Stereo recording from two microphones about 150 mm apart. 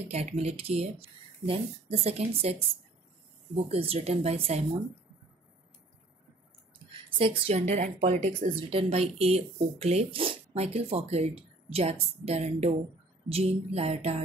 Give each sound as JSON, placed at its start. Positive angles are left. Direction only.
{"t": 0.1, "sound": "a woman's voice", "side_deg": -45}
{"t": 7.2, "sound": "a woman's voice", "side_deg": -40}